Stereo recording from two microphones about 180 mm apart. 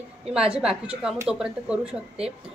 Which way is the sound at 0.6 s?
5° right (ahead or behind).